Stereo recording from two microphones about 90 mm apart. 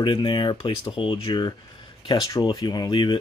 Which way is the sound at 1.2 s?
55° left (ahead or behind).